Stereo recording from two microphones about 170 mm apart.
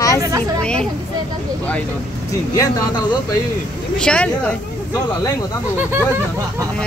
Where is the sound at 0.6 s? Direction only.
5° left (ahead or behind).